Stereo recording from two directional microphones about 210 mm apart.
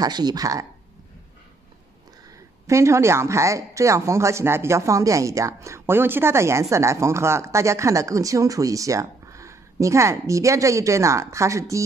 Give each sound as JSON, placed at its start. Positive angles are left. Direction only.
{"t": 0.0, "sound": "speech", "side_deg": -20}
{"t": 2.6, "sound": "speech", "side_deg": -15}